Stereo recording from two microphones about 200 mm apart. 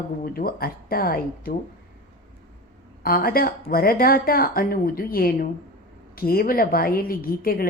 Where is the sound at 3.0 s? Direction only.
45° left (ahead or behind).